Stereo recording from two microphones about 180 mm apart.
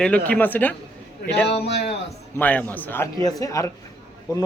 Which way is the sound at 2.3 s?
10° left (ahead or behind).